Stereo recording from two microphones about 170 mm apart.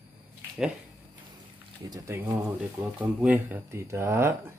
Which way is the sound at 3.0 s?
10° right (ahead or behind).